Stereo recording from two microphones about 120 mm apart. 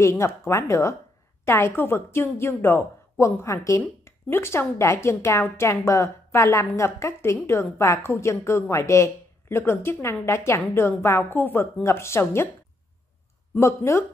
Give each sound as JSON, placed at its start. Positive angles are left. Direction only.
{"t": 0.0, "sound": "a woman's voice", "side_deg": 25}
{"t": 13.6, "sound": "a woman's voice", "side_deg": 20}